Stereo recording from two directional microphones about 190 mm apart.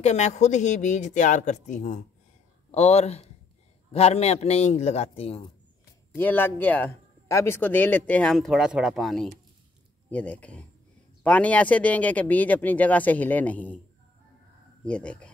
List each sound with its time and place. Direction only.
0.0 s speech: 35° left (ahead or behind)
6.1 s speech: 10° left (ahead or behind)
14.9 s speech: 5° left (ahead or behind)